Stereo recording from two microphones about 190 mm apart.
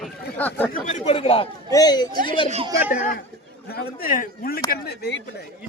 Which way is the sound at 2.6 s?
15° right (ahead or behind).